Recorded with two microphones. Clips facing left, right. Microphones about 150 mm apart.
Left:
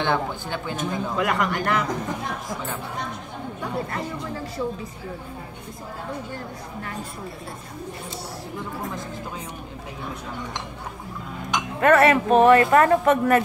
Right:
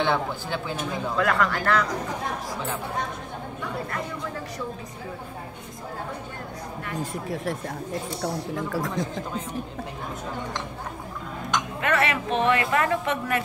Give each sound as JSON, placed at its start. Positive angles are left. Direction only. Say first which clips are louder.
{"t": 0.0, "sound": "speech", "louder": "even", "side_deg": 0}
{"t": 1.1, "sound": "speech", "louder": "right 1 dB", "side_deg": 15}
{"t": 11.8, "sound": "a man's voice", "louder": "left 10 dB", "side_deg": 45}